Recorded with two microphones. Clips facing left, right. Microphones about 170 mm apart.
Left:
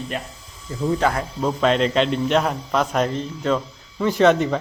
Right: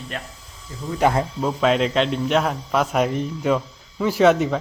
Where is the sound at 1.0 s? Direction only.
20° right (ahead or behind).